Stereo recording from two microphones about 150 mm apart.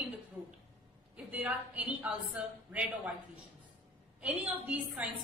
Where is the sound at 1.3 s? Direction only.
10° right (ahead or behind).